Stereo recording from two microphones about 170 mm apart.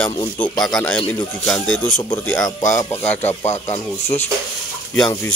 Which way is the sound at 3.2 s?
40° left (ahead or behind).